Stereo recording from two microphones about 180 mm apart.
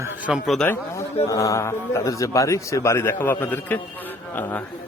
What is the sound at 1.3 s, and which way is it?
A man's voice, 20° left (ahead or behind).